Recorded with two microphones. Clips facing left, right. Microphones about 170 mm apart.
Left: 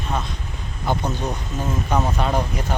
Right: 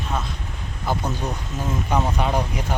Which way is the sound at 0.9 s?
5° right (ahead or behind).